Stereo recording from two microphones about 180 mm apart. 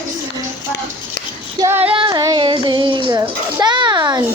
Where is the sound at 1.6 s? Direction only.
15° right (ahead or behind).